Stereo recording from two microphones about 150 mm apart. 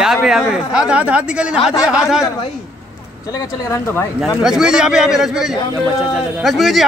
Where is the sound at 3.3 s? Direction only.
20° left (ahead or behind).